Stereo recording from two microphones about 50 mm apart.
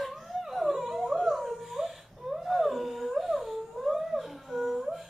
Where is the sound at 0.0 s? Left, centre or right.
Centre.